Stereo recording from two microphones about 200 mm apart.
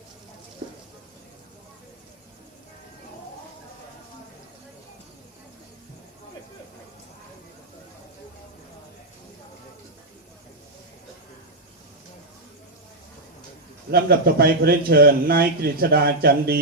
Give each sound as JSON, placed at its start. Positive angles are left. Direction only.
{"t": 13.9, "sound": "a man's voice", "side_deg": -50}